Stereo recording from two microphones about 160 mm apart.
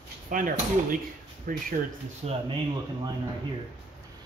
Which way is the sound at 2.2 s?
40° right (ahead or behind).